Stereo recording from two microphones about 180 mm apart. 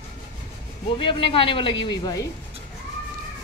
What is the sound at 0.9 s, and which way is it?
Speech, 30° left (ahead or behind).